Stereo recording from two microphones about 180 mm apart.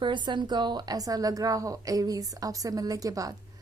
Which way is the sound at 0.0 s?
25° right (ahead or behind).